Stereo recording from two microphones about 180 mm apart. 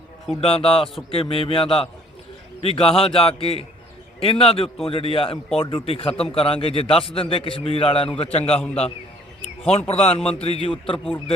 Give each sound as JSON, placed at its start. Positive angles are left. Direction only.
{"t": 0.4, "sound": "a man's voice", "side_deg": 30}
{"t": 9.6, "sound": "a man's voice", "side_deg": 35}